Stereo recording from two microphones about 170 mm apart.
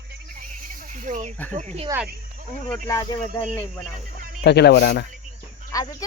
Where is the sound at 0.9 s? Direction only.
45° right (ahead or behind).